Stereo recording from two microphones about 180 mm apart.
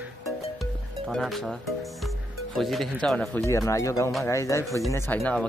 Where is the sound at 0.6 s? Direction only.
Centre (ahead or behind).